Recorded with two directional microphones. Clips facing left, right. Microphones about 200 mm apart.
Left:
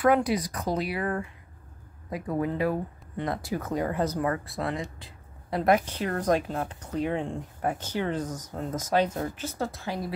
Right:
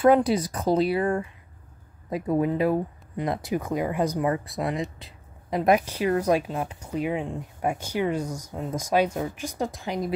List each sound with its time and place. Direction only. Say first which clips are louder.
0.0 s speech: right 4 dB; 30° right (ahead or behind)